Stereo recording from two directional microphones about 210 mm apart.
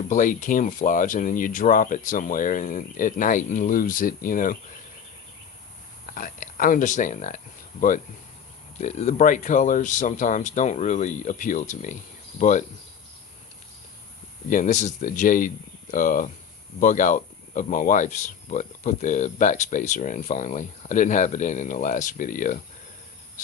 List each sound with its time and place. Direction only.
0.1 s speech: 40° left (ahead or behind)
6.1 s speech: 40° left (ahead or behind)
14.5 s speech: 35° left (ahead or behind)